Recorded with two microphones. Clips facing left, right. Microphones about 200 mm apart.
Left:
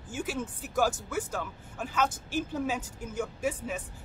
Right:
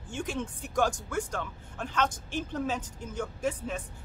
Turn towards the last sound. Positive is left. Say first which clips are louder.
# even
turn(degrees=10)  # may be behind; listen again after turning